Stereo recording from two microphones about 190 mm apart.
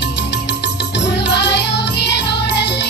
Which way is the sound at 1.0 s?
65° left (ahead or behind).